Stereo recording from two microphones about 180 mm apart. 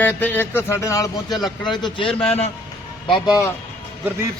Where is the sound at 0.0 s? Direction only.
10° left (ahead or behind); by 2.5 s 35° left (ahead or behind).